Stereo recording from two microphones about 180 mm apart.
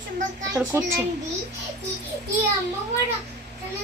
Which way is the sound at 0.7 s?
20° right (ahead or behind).